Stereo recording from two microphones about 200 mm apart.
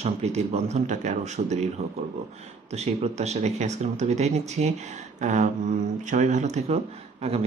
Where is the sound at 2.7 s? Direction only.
35° right (ahead or behind).